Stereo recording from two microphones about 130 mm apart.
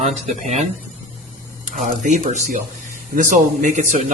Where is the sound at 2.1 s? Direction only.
70° right (ahead or behind).